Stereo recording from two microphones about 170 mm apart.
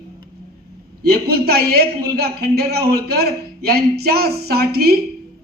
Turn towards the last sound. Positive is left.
turn(degrees=-65)  # may be behind; listen again after turning